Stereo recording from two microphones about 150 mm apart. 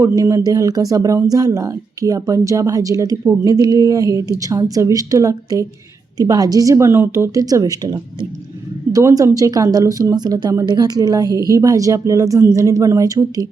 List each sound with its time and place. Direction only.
0.0 s a woman's voice: 20° right (ahead or behind)